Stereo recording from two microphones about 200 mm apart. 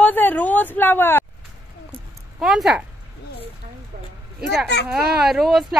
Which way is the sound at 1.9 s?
Centre (ahead or behind).